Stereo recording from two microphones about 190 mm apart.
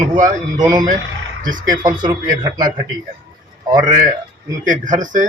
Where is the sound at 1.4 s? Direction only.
45° right (ahead or behind).